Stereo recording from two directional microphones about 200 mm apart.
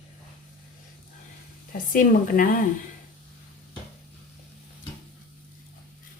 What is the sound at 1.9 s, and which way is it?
Speech, 45° left (ahead or behind).